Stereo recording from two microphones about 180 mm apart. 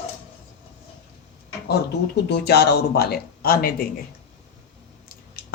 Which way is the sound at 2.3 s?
65° left (ahead or behind).